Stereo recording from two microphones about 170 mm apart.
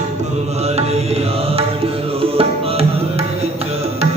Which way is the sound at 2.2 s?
35° right (ahead or behind).